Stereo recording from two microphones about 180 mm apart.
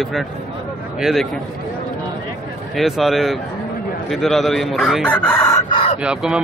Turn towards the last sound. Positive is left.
turn(degrees=-5)  # may be behind; listen again after turning